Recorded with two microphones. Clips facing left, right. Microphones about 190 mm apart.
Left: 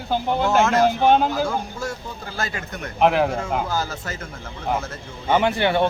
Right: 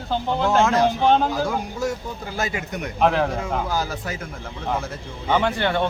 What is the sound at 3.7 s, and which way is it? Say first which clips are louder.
Speech: right 1 dB; 15° right (ahead or behind).